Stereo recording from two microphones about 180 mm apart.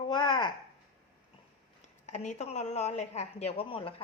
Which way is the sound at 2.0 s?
40° left (ahead or behind).